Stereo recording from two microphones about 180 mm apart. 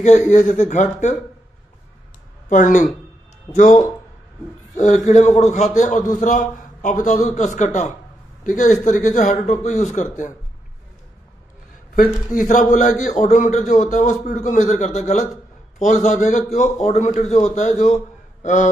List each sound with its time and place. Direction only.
0.3 s a man's voice: 45° left (ahead or behind)
2.5 s a man's voice: 45° left (ahead or behind)
11.9 s a man's voice: 50° left (ahead or behind)